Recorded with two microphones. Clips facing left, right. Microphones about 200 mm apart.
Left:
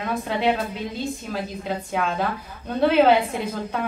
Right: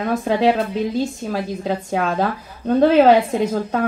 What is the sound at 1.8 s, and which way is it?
A woman's voice, 40° right (ahead or behind).